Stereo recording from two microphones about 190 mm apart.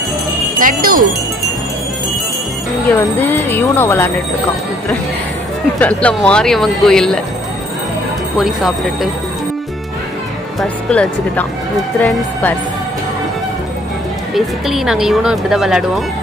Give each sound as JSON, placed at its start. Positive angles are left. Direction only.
{"t": 0.6, "sound": "speech", "side_deg": -45}
{"t": 2.9, "sound": "speech", "side_deg": 10}
{"t": 5.8, "sound": "speech", "side_deg": 5}
{"t": 8.4, "sound": "speech", "side_deg": 0}
{"t": 10.6, "sound": "speech", "side_deg": 5}
{"t": 14.3, "sound": "speech", "side_deg": 0}